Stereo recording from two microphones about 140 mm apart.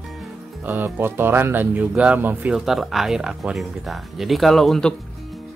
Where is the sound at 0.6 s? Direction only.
15° right (ahead or behind); by 4.9 s centre (ahead or behind).